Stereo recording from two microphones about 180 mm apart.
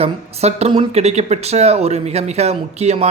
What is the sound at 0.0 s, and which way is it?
Speech, 35° right (ahead or behind).